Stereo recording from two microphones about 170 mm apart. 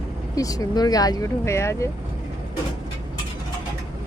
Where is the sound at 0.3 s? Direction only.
20° left (ahead or behind).